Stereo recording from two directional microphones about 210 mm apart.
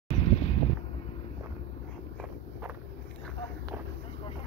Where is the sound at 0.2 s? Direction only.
30° left (ahead or behind).